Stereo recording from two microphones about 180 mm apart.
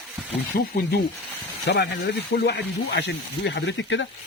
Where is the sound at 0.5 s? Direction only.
55° left (ahead or behind).